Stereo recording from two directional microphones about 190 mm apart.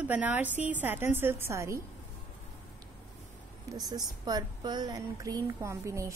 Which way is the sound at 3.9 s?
20° right (ahead or behind).